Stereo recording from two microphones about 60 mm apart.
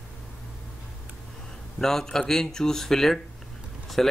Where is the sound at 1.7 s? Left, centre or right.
Centre.